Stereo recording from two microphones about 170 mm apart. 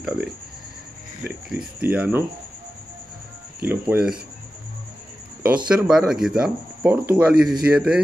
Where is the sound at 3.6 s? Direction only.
10° right (ahead or behind).